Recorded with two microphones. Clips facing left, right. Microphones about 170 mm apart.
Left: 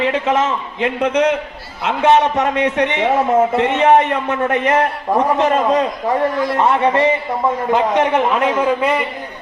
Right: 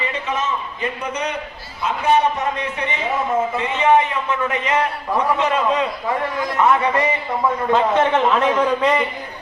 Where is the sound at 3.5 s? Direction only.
65° left (ahead or behind); by 5.8 s 45° left (ahead or behind).